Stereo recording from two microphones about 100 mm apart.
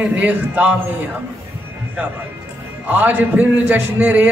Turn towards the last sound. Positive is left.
turn(degrees=-20)  # may be behind; listen again after turning